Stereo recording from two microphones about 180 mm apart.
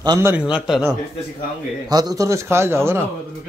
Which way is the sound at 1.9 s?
20° right (ahead or behind).